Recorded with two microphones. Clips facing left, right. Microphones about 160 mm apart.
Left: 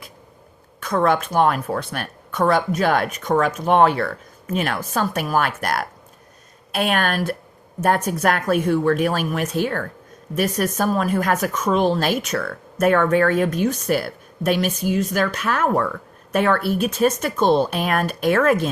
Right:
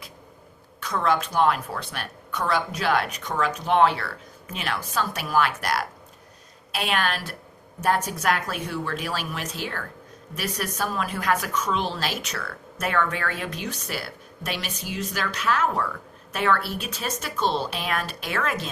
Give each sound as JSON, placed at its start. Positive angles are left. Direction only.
{"t": 0.8, "sound": "speech", "side_deg": 50}